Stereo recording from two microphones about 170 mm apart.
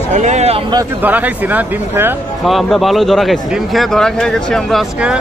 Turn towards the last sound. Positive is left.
turn(degrees=0)  # may be behind; listen again after turning